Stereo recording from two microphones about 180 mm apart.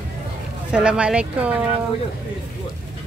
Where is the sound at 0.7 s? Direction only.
5° right (ahead or behind).